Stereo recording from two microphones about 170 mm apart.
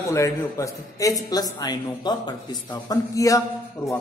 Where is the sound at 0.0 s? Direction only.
15° left (ahead or behind).